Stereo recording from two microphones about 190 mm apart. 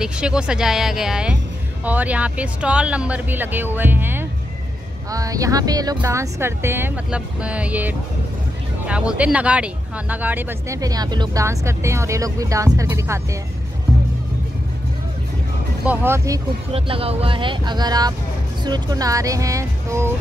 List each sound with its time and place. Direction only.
0.0 s speech: 5° right (ahead or behind)
15.8 s speech: 10° right (ahead or behind)
16.7 s speech: 30° right (ahead or behind)